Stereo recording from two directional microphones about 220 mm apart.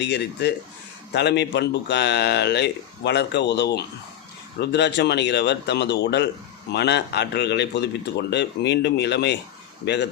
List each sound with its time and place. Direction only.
0.0 s speech: 50° left (ahead or behind)